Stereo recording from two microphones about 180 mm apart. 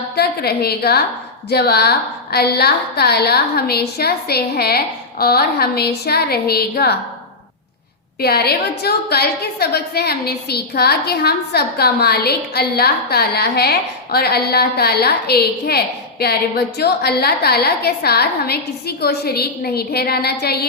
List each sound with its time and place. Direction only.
0.2 s a woman's voice: 60° left (ahead or behind)
8.2 s a woman's voice: 60° left (ahead or behind)